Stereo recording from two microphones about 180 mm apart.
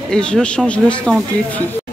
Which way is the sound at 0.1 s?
5° left (ahead or behind).